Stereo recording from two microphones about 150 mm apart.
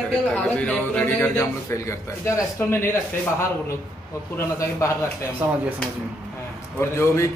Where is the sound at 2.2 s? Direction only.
15° left (ahead or behind).